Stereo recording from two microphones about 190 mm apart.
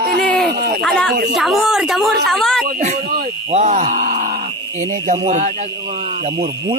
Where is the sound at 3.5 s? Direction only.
35° right (ahead or behind).